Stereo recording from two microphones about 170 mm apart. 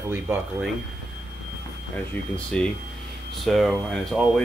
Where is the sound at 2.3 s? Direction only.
5° left (ahead or behind).